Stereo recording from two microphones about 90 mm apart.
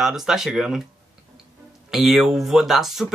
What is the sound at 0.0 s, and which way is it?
Speech, 5° right (ahead or behind).